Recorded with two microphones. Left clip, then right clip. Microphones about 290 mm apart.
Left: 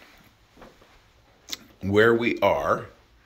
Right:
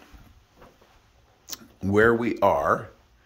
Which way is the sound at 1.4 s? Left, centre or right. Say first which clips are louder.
Even; right.